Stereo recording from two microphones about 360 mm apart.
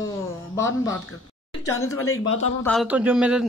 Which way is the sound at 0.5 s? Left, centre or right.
Centre.